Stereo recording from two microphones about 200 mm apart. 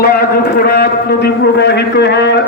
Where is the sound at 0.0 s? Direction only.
50° left (ahead or behind).